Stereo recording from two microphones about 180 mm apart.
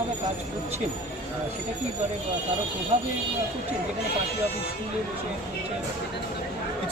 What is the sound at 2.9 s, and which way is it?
Speech, 35° right (ahead or behind).